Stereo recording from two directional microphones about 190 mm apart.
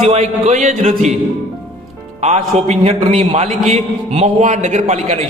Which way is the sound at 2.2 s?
35° right (ahead or behind).